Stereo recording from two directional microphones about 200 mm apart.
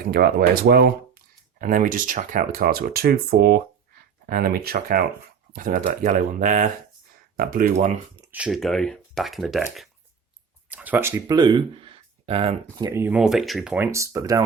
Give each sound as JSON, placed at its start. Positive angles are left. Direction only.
{"t": 0.0, "sound": "speech", "side_deg": -50}
{"t": 8.2, "sound": "speech", "side_deg": -5}
{"t": 10.7, "sound": "speech", "side_deg": -5}
{"t": 11.3, "sound": "speech", "side_deg": -20}
{"t": 12.8, "sound": "speech", "side_deg": -10}